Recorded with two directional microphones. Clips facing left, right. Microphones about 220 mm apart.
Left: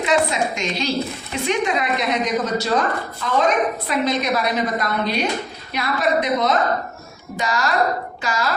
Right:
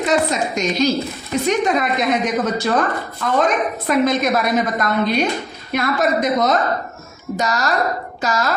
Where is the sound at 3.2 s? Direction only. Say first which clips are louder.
Right 1 dB; 50° right (ahead or behind).